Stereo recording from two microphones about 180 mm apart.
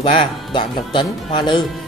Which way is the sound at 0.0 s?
30° left (ahead or behind).